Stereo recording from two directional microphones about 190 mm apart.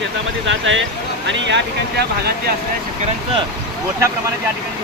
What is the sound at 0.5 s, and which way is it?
Speech, 75° right (ahead or behind).